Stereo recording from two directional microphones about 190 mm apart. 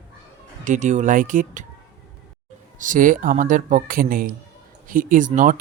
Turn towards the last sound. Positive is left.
turn(degrees=-40)  # may be behind; listen again after turning